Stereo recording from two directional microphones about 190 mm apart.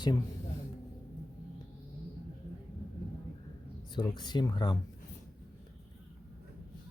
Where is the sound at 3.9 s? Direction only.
20° left (ahead or behind).